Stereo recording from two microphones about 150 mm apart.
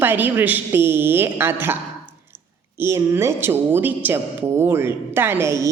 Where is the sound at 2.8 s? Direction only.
15° right (ahead or behind).